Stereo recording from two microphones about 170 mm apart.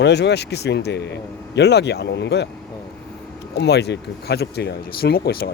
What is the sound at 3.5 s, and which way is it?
Speech, 80° left.